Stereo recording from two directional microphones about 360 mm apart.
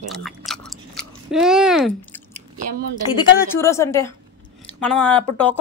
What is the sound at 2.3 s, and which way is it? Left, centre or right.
Chewing, right.